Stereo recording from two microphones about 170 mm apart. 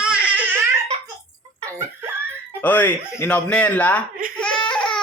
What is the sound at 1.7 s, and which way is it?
Laughter, 15° right (ahead or behind).